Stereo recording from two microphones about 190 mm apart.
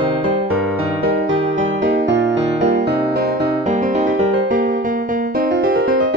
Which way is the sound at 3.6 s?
40° right (ahead or behind).